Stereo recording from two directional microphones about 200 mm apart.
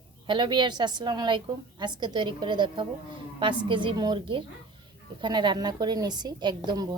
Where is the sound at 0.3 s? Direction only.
25° right (ahead or behind).